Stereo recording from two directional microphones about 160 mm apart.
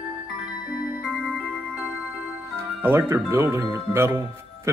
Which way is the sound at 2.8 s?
15° right (ahead or behind).